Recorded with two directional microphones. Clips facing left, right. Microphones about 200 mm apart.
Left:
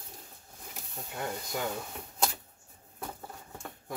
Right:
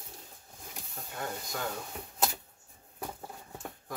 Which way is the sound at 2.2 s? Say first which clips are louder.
Even; 5° right (ahead or behind).